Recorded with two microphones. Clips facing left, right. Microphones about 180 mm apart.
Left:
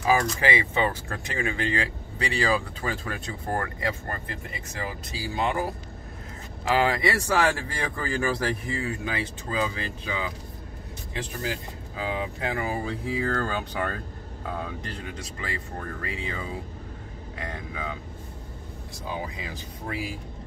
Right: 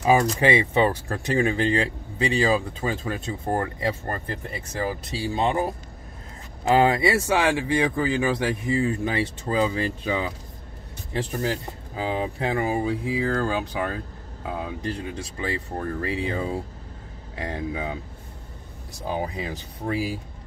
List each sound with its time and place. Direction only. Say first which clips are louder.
0.0 s speech: right 4 dB; 25° right (ahead or behind)
4.1 s speech: right 4 dB; 40° right (ahead or behind); by 5.7 s 25° right (ahead or behind)
6.7 s speech: right 5 dB; 25° right (ahead or behind)
7.2 s speech: right 3 dB; 15° right (ahead or behind); by 10.3 s 35° right (ahead or behind)
11.4 s speech: right 5 dB; 35° right (ahead or behind)
12.8 s speech: right 4 dB; 10° right (ahead or behind)
15.1 s speech: right 5 dB; 30° right (ahead or behind)
19.0 s speech: right 6 dB; 40° right (ahead or behind)